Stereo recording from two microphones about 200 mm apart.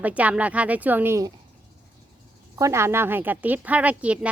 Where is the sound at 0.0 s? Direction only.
5° right (ahead or behind).